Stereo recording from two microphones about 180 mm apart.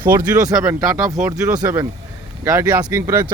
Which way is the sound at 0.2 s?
20° right (ahead or behind).